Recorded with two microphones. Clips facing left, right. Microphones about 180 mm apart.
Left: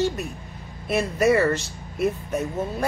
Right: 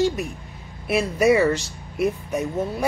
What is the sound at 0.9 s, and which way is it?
Speech, centre (ahead or behind).